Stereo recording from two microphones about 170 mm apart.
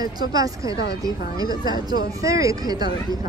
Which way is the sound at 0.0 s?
20° right (ahead or behind).